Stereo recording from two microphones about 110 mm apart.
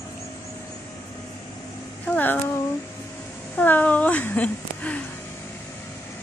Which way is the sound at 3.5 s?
15° left (ahead or behind).